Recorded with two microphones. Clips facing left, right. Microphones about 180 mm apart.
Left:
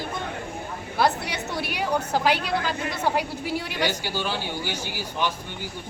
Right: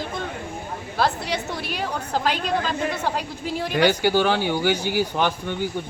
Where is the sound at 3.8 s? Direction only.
65° right (ahead or behind).